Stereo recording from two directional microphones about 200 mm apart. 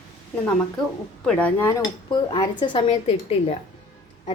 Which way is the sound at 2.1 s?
20° left (ahead or behind).